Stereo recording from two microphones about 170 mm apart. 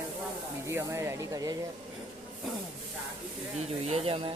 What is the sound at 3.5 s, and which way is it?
Speech, 40° right (ahead or behind).